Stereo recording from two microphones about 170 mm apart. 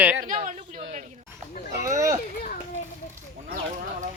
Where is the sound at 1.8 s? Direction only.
20° right (ahead or behind).